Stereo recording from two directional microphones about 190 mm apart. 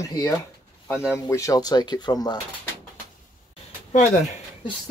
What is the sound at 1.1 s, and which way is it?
Speech, 15° left (ahead or behind).